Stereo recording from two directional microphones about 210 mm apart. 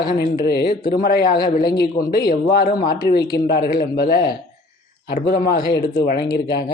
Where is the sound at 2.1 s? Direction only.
50° left (ahead or behind).